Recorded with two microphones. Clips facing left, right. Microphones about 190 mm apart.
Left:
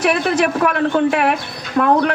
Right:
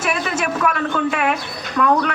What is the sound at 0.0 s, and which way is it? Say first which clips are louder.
Speech: left 6 dB; 60° left (ahead or behind).